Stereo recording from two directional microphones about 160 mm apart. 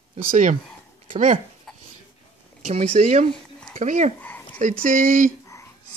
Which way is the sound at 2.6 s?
40° right (ahead or behind).